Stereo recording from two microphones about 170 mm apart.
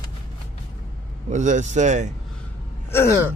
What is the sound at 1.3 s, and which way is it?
Speech, 45° right (ahead or behind).